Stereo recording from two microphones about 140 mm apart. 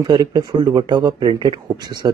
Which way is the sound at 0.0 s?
30° right (ahead or behind).